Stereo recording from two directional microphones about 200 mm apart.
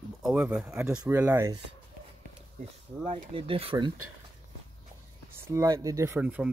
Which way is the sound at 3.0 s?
25° right (ahead or behind).